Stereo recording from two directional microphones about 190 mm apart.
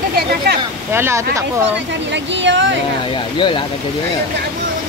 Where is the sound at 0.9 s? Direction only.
15° right (ahead or behind).